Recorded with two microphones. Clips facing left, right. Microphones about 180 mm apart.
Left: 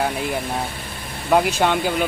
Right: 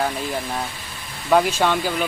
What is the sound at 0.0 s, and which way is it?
Speech, 60° left (ahead or behind).